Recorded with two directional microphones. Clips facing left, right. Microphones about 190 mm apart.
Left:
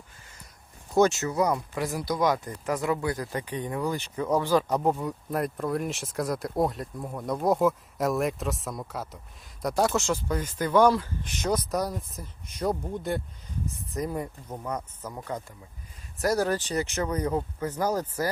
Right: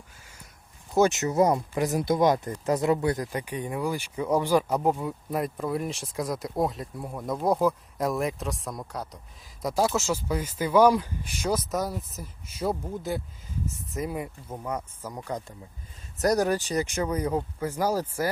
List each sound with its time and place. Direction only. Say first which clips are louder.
1.1 s speech: right 3 dB; 20° right (ahead or behind)
3.3 s speech: even; 10° right (ahead or behind)